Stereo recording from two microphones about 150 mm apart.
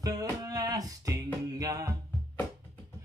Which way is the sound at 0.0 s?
25° right (ahead or behind).